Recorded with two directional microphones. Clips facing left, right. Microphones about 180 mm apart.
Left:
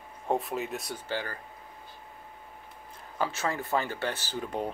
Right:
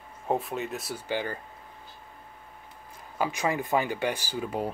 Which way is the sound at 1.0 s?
20° right (ahead or behind).